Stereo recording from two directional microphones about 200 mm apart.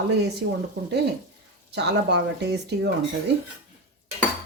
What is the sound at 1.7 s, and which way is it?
Speech, 60° right (ahead or behind).